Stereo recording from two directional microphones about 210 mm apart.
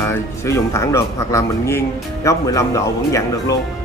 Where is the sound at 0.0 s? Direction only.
15° left (ahead or behind).